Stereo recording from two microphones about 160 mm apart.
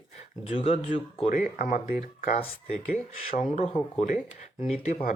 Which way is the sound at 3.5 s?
45° left (ahead or behind).